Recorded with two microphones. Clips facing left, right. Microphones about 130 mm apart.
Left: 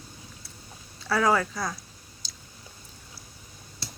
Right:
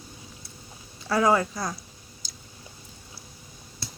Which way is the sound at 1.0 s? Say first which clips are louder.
Right 2 dB; 20° right (ahead or behind).